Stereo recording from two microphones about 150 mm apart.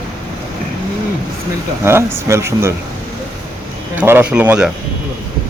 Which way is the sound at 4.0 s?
10° right (ahead or behind).